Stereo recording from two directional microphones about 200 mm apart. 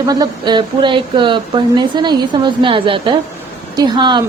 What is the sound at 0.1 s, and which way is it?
Speech, 20° right (ahead or behind).